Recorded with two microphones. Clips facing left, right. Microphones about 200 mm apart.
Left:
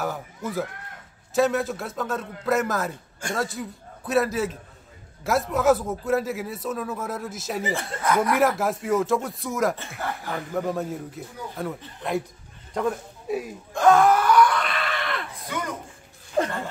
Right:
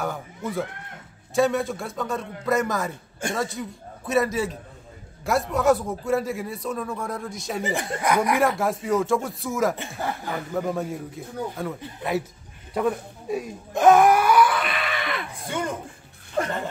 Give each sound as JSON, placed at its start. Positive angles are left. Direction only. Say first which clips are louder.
{"t": 1.3, "sound": "a man's voice", "louder": "even", "side_deg": 0}
{"t": 7.7, "sound": "speech", "louder": "right 1 dB", "side_deg": -15}
{"t": 8.4, "sound": "a man's voice", "louder": "even", "side_deg": 0}
{"t": 9.8, "sound": "speech", "louder": "right 2 dB", "side_deg": -15}
{"t": 10.3, "sound": "a man's voice", "louder": "left 1 dB", "side_deg": 0}
{"t": 13.7, "sound": "a sound", "louder": "right 2 dB", "side_deg": -15}
{"t": 15.4, "sound": "a sound", "louder": "right 4 dB", "side_deg": -30}